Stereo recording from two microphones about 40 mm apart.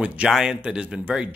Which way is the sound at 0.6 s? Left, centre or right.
Right.